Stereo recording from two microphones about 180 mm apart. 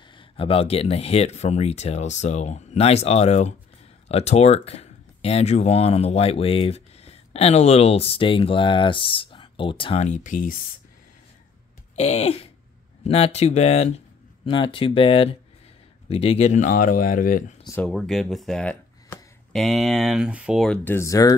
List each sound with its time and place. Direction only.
0.0 s speech: 30° left (ahead or behind)
10.0 s speech: 45° left (ahead or behind)
11.9 s speech: 35° left (ahead or behind)
17.8 s speech: centre (ahead or behind); by 21.4 s 20° left (ahead or behind)